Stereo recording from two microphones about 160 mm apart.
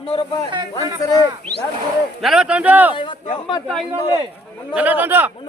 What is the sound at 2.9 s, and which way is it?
Speech, 30° left (ahead or behind).